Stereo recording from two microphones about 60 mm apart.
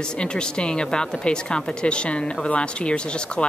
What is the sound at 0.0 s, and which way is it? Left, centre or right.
Speech, centre.